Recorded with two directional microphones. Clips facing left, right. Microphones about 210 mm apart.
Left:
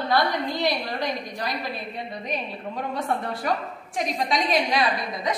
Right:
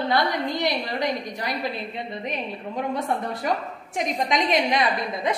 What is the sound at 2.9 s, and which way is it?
A woman's voice, 20° right (ahead or behind).